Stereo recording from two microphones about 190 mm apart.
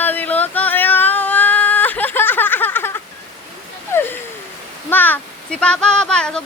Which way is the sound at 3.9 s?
10° left (ahead or behind).